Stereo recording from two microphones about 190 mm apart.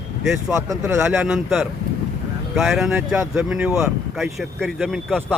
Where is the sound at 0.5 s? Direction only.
15° right (ahead or behind).